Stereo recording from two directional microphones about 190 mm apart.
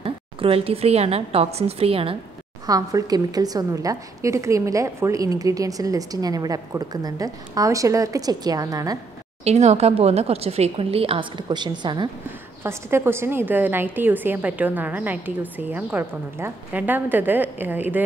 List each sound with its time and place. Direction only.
0.0 s a woman's voice: 30° right (ahead or behind)
2.6 s a woman's voice: 20° right (ahead or behind)
9.4 s a woman's voice: 35° right (ahead or behind)
12.6 s a woman's voice: 10° right (ahead or behind)